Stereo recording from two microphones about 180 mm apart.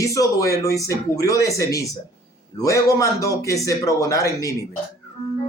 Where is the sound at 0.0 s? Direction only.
20° left (ahead or behind).